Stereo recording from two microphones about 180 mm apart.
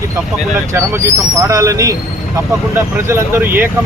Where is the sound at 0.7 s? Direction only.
15° right (ahead or behind).